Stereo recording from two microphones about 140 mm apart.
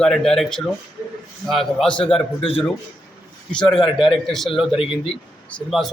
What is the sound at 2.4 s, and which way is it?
Speech, 40° left (ahead or behind).